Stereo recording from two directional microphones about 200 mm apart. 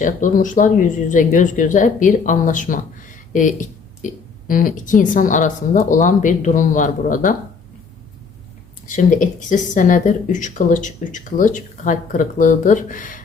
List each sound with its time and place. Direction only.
0.0 s a woman's voice: 40° left (ahead or behind)
8.9 s a woman's voice: 40° left (ahead or behind)